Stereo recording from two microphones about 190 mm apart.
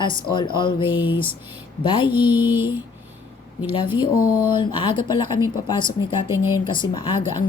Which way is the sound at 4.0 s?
25° left (ahead or behind).